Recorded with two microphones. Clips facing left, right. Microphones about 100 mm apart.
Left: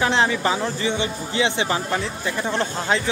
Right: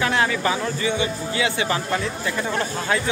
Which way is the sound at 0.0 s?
25° left (ahead or behind).